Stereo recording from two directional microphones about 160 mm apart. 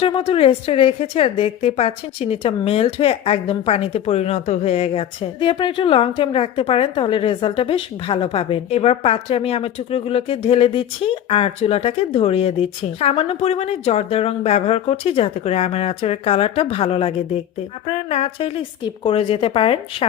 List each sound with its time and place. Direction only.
0.0 s a woman's voice: 35° left (ahead or behind)